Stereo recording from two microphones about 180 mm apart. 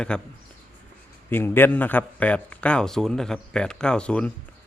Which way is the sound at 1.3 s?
10° left (ahead or behind).